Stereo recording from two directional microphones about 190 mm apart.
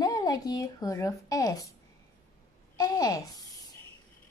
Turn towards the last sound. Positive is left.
turn(degrees=20)  # may be behind; listen again after turning